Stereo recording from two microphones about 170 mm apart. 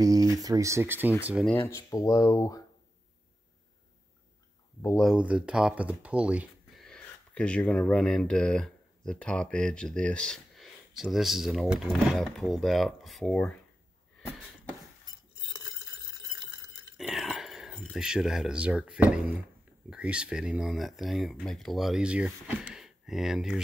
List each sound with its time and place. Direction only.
0.0 s speech: 20° right (ahead or behind)
1.5 s speech: 15° left (ahead or behind)
4.9 s speech: 5° right (ahead or behind)
6.9 s speech: 5° left (ahead or behind)
16.9 s a sound: centre (ahead or behind)
17.9 s speech: 5° right (ahead or behind)